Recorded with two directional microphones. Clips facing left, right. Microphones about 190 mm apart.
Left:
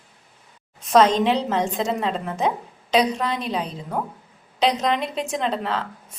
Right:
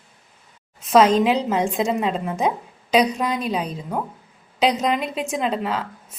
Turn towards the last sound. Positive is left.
turn(degrees=-10)  # may be behind; listen again after turning